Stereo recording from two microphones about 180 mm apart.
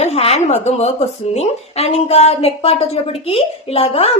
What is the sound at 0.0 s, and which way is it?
Speech, 35° left (ahead or behind).